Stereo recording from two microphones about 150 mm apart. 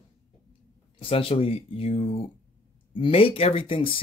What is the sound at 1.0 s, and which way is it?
Speech, 40° left (ahead or behind).